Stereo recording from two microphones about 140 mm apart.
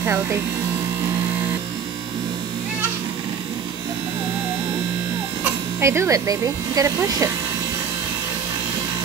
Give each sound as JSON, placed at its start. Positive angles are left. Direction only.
{"t": 0.0, "sound": "speech", "side_deg": -20}
{"t": 5.4, "sound": "speech", "side_deg": -20}